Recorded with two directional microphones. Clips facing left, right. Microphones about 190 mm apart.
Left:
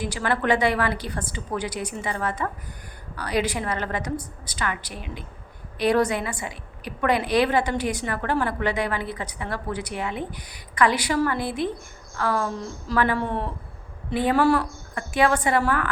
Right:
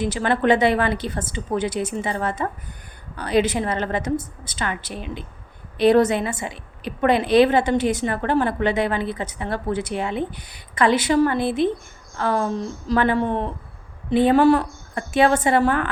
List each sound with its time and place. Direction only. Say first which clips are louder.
0.0 s a woman's voice: right 5 dB; 25° right (ahead or behind)